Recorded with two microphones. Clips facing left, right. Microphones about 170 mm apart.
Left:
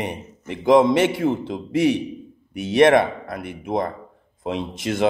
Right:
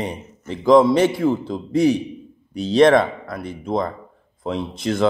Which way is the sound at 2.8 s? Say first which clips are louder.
Right 1 dB; 60° left (ahead or behind).